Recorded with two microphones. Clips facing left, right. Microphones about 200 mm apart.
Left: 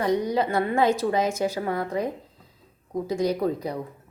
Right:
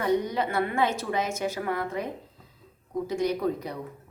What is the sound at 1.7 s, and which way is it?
Speech, 35° left (ahead or behind).